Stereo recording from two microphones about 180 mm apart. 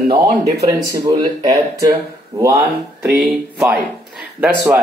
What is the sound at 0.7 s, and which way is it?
Speech, 20° right (ahead or behind).